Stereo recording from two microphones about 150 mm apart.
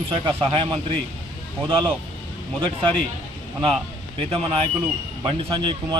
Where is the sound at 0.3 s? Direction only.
35° right (ahead or behind).